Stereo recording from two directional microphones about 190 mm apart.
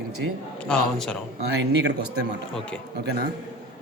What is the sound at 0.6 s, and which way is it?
Speech, 5° left (ahead or behind).